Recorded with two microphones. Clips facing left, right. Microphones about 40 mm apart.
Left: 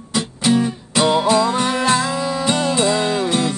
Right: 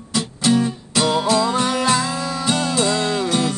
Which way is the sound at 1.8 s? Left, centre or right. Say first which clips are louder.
Left 2 dB; left.